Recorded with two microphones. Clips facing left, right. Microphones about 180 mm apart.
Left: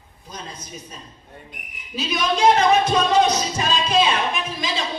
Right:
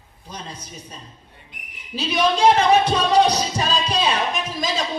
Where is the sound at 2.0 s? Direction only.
30° right (ahead or behind).